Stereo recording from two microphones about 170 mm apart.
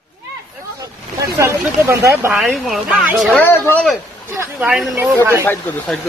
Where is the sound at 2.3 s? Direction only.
Centre (ahead or behind).